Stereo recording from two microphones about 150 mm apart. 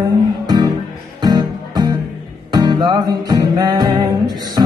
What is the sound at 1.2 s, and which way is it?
Music, 25° right (ahead or behind).